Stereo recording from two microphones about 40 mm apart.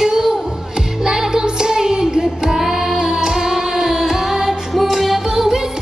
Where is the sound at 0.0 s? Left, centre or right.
Centre.